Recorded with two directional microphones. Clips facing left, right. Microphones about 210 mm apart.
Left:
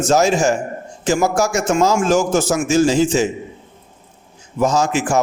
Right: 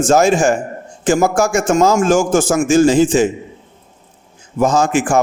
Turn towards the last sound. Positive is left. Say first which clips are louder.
# right 3 dB
turn(degrees=-50)  # may be behind; listen again after turning